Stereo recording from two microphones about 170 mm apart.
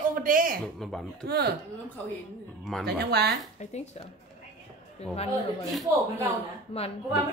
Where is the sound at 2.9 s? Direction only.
70° right (ahead or behind).